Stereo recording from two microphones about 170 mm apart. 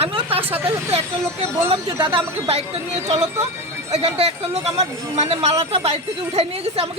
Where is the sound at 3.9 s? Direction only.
40° right (ahead or behind).